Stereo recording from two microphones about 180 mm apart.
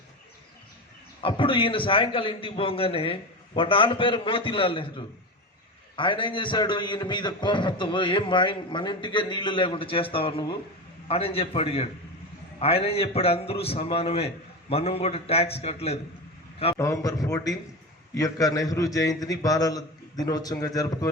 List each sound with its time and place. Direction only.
1.2 s a man's voice: 30° left (ahead or behind)
16.7 s a man's voice: 15° left (ahead or behind)